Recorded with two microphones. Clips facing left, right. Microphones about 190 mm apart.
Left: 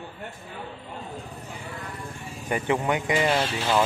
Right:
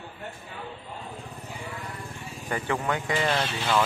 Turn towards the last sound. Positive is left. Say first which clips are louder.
# left 2 dB
turn(degrees=10)  # may be behind; listen again after turning